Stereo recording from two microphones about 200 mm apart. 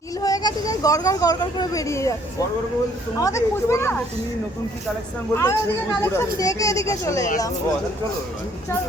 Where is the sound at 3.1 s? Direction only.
15° left (ahead or behind).